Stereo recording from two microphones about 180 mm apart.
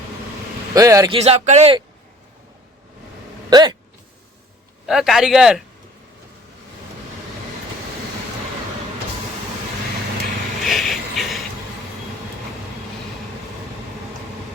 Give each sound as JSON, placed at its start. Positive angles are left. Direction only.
{"t": 0.7, "sound": "speech", "side_deg": -20}
{"t": 1.2, "sound": "speech", "side_deg": -35}
{"t": 3.5, "sound": "speech", "side_deg": -25}
{"t": 4.9, "sound": "speech", "side_deg": 0}
{"t": 10.6, "sound": "a sound", "side_deg": 0}